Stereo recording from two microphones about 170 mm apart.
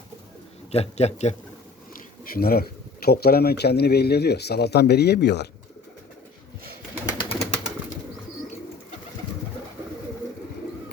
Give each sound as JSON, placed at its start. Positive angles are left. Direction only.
{"t": 0.7, "sound": "speech", "side_deg": 40}
{"t": 2.2, "sound": "speech", "side_deg": 60}
{"t": 6.9, "sound": "bird", "side_deg": 20}